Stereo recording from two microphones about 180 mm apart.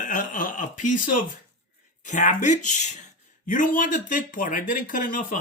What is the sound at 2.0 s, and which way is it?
Speech, 45° left (ahead or behind).